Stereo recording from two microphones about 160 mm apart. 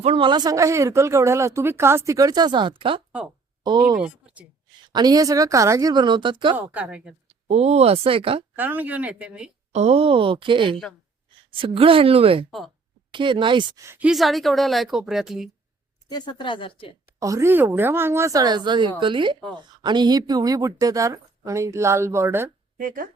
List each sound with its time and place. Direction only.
0.0 s speech: 35° right (ahead or behind)
3.9 s speech: 5° right (ahead or behind)
4.9 s speech: 25° right (ahead or behind)
6.6 s speech: 10° right (ahead or behind)
7.3 s speech: 40° right (ahead or behind)
8.5 s speech: 10° right (ahead or behind)
9.7 s speech: 40° right (ahead or behind)
12.5 s a woman's voice: centre (ahead or behind)
13.1 s speech: 30° right (ahead or behind)
13.8 s speech: 15° right (ahead or behind)
14.1 s a woman's voice: centre (ahead or behind)
16.0 s a woman's voice: 25° left (ahead or behind)
17.2 s speech: 20° right (ahead or behind)
22.8 s speech: 60° right (ahead or behind)